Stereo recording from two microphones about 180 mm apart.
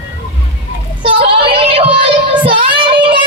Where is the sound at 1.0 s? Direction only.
30° right (ahead or behind).